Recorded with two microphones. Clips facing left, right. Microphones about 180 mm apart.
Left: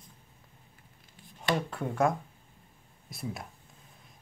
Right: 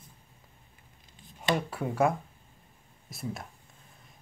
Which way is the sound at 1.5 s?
5° right (ahead or behind).